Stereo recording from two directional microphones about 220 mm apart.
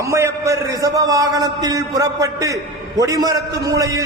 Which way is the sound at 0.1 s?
15° right (ahead or behind).